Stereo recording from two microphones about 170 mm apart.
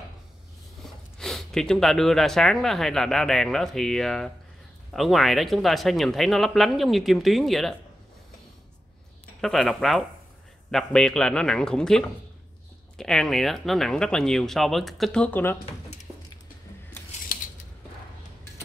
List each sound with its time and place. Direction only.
1.1 s speech: 5° left (ahead or behind)
9.4 s speech: centre (ahead or behind)
17.3 s scissors: 55° left (ahead or behind)